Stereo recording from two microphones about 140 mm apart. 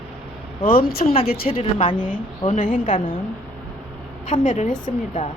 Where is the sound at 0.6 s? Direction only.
90° left.